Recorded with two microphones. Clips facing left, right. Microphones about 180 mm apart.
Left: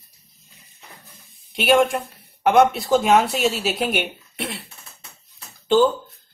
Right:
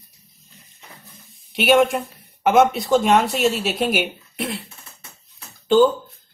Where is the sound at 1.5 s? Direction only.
Centre (ahead or behind).